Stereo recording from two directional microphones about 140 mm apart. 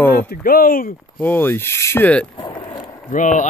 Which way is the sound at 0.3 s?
90° left.